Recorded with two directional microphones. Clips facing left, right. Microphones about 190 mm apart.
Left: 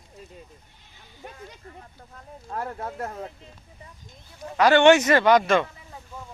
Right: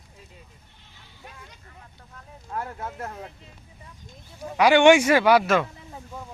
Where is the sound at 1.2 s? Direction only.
40° left (ahead or behind).